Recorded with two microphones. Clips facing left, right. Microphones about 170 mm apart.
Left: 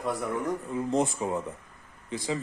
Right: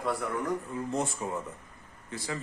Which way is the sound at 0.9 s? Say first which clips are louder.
Left 5 dB; 20° left (ahead or behind).